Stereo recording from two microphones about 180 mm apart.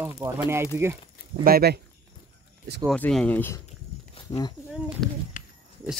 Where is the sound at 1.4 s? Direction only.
60° right (ahead or behind).